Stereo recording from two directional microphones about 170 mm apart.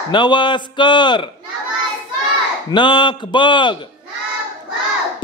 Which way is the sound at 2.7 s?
25° left (ahead or behind).